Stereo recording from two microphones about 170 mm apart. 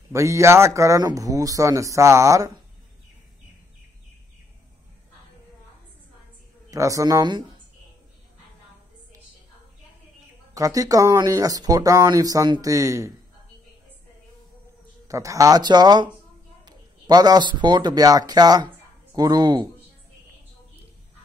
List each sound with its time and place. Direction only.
0.1 s speech: 15° right (ahead or behind)
6.7 s speech: 20° right (ahead or behind)
10.5 s speech: 20° right (ahead or behind)
15.0 s speech: 20° right (ahead or behind)